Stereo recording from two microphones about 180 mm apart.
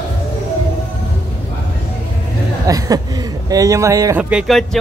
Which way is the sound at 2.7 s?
20° right (ahead or behind).